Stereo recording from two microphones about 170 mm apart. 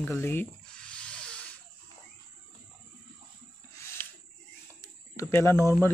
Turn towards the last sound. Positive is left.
turn(degrees=15)  # may be behind; listen again after turning